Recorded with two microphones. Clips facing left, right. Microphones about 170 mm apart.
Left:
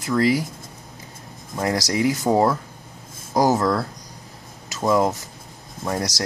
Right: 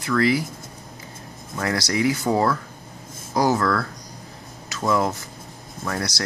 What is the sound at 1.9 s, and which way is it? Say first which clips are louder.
Speech: left 1 dB; 20° left (ahead or behind).